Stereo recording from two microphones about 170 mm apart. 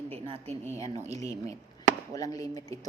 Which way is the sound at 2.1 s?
20° left (ahead or behind).